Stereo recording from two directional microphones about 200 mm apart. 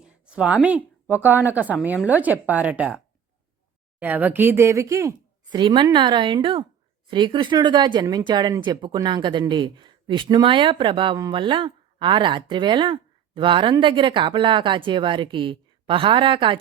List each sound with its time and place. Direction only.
0.0 s speech: 5° right (ahead or behind)
4.0 s speech: 10° right (ahead or behind); by 16.6 s 25° right (ahead or behind)